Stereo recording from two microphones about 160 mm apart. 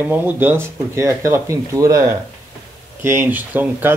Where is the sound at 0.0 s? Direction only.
15° right (ahead or behind).